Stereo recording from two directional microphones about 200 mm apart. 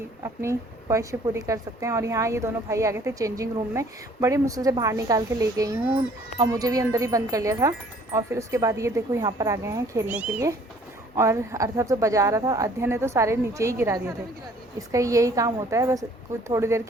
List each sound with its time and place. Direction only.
0.2 s speech: 15° right (ahead or behind)